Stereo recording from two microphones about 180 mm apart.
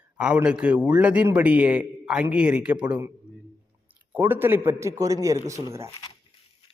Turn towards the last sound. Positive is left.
turn(degrees=-15)  # may be behind; listen again after turning